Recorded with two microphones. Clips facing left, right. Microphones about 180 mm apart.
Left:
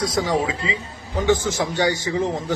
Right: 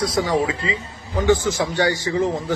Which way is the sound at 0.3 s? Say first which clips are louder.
Right 1 dB; 20° left (ahead or behind).